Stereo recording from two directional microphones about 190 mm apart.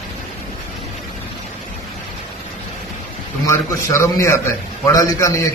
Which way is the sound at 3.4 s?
15° left (ahead or behind).